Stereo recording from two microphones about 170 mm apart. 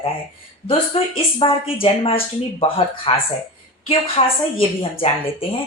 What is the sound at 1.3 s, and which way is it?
Speech, 35° left (ahead or behind).